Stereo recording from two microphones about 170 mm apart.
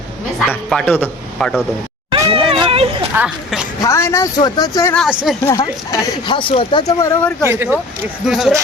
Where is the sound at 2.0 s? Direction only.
20° right (ahead or behind).